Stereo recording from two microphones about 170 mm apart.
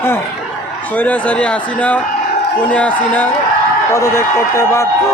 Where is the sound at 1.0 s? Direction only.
10° left (ahead or behind).